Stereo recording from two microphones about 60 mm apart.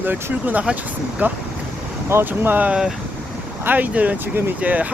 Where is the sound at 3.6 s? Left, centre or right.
Right.